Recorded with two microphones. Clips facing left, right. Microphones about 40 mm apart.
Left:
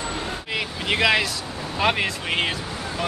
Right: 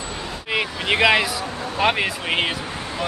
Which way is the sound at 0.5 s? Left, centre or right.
Centre.